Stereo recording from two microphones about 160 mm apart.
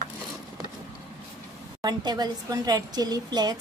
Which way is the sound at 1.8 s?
25° right (ahead or behind).